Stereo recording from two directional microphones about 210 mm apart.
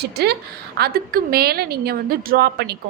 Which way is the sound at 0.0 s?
50° right (ahead or behind).